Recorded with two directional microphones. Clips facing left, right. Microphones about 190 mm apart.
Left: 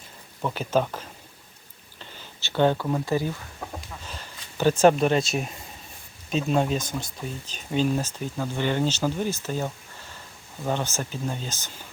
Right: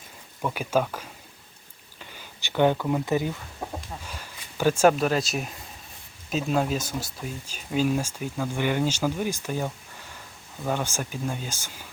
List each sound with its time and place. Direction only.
0.5 s speech: 10° right (ahead or behind)
2.1 s a sound: 15° right (ahead or behind)
2.8 s speech: 15° right (ahead or behind)